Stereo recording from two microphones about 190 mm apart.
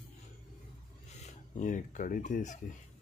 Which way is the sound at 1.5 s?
40° left (ahead or behind).